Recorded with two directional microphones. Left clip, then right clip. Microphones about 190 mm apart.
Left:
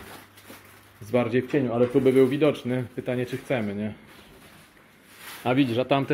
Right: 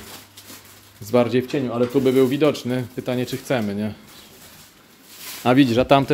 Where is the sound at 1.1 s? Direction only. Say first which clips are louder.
Right 5 dB; 20° right (ahead or behind).